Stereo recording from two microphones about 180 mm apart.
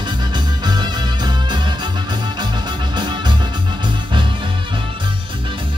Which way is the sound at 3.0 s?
25° right (ahead or behind).